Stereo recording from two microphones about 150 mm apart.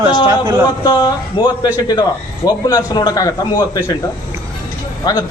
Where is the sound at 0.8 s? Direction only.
25° left (ahead or behind).